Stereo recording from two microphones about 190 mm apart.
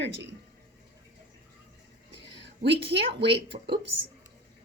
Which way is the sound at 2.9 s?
60° right (ahead or behind).